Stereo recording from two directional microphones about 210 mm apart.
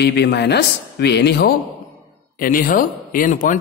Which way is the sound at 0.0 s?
50° left (ahead or behind).